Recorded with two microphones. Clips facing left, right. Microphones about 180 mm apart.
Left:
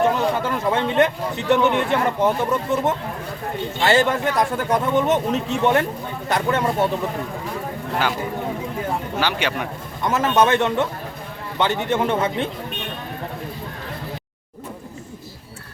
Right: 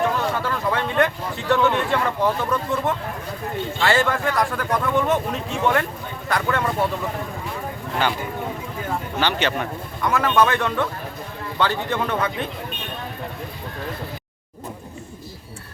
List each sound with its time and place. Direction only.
0.0 s a man's voice: 20° left (ahead or behind)
9.2 s speech: 10° left (ahead or behind)
10.0 s a man's voice: 25° left (ahead or behind)